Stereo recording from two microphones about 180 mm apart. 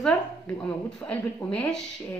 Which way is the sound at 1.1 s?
5° left (ahead or behind).